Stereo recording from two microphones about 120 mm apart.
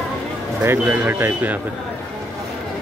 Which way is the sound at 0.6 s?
10° right (ahead or behind).